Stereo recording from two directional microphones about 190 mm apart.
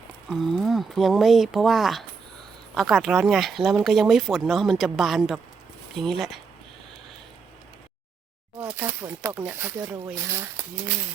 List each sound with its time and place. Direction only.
0.3 s speech: centre (ahead or behind)
8.5 s speech: 10° right (ahead or behind)